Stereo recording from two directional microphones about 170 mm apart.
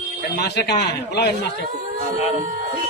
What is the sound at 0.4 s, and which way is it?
Speech, 70° left (ahead or behind).